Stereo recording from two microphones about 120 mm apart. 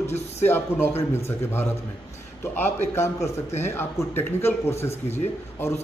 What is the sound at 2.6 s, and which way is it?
A man's voice, 20° left (ahead or behind).